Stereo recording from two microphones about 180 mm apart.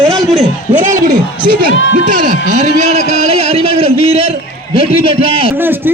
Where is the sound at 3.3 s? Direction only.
35° right (ahead or behind).